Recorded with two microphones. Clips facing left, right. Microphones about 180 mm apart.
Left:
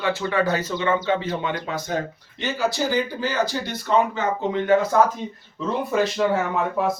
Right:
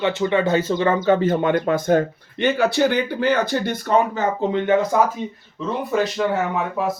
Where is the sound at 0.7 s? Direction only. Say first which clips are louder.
Right 4 dB; 40° right (ahead or behind).